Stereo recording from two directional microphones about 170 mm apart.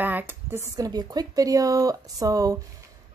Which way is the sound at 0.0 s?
10° right (ahead or behind).